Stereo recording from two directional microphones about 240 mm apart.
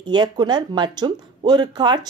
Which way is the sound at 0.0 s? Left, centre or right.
Centre.